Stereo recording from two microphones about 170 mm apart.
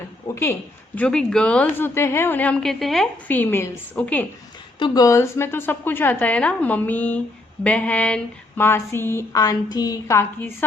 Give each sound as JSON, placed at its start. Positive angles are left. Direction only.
{"t": 0.3, "sound": "a woman's voice", "side_deg": 20}
{"t": 0.9, "sound": "a woman's voice", "side_deg": 5}
{"t": 4.8, "sound": "a woman's voice", "side_deg": 20}